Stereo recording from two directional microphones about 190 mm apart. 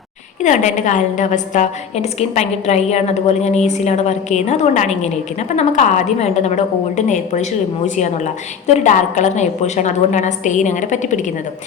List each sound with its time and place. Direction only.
0.4 s a woman's voice: 40° left (ahead or behind)